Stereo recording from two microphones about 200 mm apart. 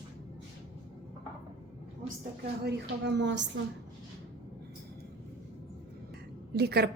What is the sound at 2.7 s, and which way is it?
Speech, 60° right (ahead or behind).